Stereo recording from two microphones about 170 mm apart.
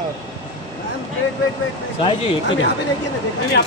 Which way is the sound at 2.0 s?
35° left (ahead or behind).